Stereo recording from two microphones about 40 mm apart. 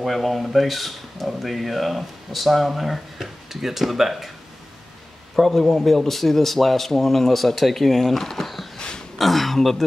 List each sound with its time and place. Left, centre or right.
0.0 s speech: centre
5.3 s speech: centre
8.7 s a sound: centre
9.2 s speech: centre